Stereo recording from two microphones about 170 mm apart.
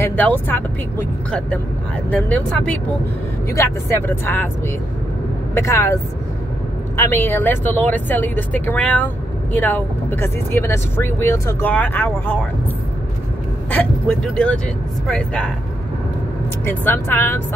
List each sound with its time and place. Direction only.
0.0 s speech: 10° left (ahead or behind)
5.5 s speech: 15° left (ahead or behind)
7.2 s speech: 10° left (ahead or behind)
13.7 s speech: 10° left (ahead or behind)
16.6 s speech: 10° left (ahead or behind)